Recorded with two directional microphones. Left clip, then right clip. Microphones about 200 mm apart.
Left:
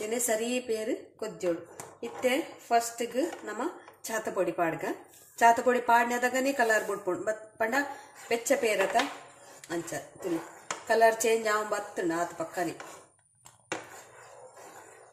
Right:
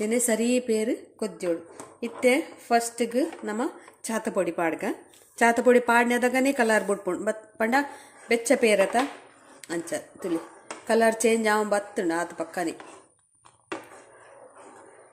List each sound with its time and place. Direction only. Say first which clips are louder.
0.0 s a woman's voice: right 5 dB; 45° right (ahead or behind)